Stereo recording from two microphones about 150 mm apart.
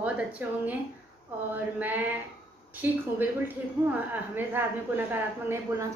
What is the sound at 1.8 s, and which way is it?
A woman's voice, 10° right (ahead or behind).